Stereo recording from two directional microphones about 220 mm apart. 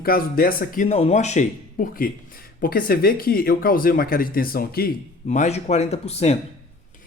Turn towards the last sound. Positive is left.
turn(degrees=30)  # may be behind; listen again after turning